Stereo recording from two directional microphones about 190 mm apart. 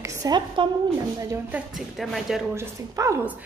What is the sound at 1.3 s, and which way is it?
Speech, 5° right (ahead or behind).